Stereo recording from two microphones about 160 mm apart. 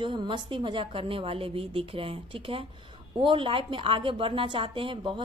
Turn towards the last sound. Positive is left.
turn(degrees=-30)  # may be behind; listen again after turning